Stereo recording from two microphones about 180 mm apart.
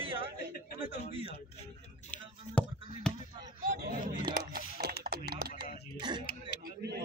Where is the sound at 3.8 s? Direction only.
60° right (ahead or behind).